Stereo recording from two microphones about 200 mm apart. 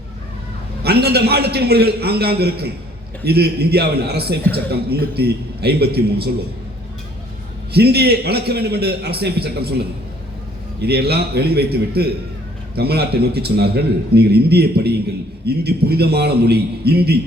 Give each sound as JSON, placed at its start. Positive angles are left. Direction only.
{"t": 0.8, "sound": "a man's voice", "side_deg": -55}
{"t": 7.7, "sound": "a man's voice", "side_deg": -55}